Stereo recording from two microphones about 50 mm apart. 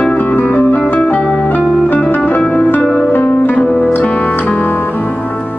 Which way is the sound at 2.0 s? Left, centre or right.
Left.